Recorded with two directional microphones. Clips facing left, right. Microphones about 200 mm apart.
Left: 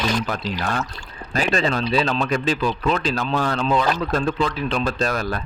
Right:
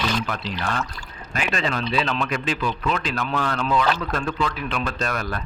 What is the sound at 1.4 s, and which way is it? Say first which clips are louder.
Speech: left 4 dB; 35° left (ahead or behind).